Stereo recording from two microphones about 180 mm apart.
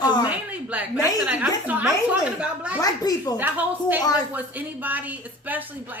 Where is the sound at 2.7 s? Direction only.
20° left (ahead or behind).